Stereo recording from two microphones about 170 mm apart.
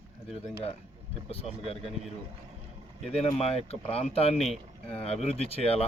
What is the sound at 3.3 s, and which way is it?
Speech, 35° left (ahead or behind).